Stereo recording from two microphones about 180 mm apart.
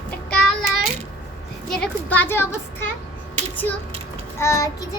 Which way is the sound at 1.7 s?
5° left (ahead or behind).